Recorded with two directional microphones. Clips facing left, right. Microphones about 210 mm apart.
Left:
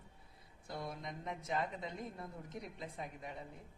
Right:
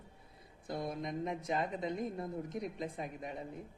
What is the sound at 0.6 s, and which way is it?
Speech, 20° right (ahead or behind).